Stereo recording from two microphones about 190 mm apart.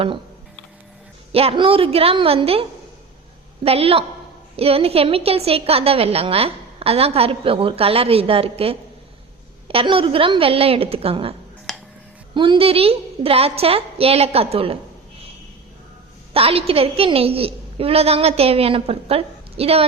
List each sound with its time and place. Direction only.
0.0 s music: 30° right (ahead or behind)
1.3 s a woman's voice: 30° right (ahead or behind)
11.7 s a sound: centre (ahead or behind)
12.3 s a woman's voice: 25° right (ahead or behind)
16.3 s a woman's voice: 30° right (ahead or behind)